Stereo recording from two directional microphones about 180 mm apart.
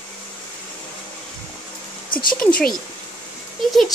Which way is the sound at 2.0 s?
25° left (ahead or behind).